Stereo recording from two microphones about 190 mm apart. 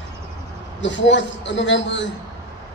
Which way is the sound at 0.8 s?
70° left (ahead or behind).